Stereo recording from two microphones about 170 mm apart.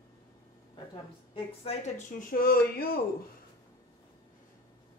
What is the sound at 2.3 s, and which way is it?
Speech, 60° left (ahead or behind).